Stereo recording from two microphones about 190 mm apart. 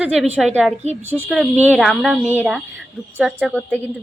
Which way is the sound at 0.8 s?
35° right (ahead or behind).